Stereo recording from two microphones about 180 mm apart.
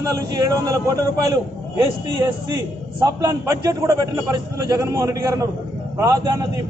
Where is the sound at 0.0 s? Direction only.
20° right (ahead or behind).